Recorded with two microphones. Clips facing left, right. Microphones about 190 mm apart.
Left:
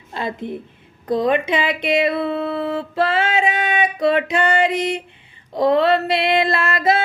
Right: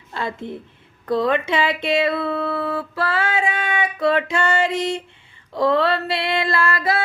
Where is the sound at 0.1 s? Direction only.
20° left (ahead or behind).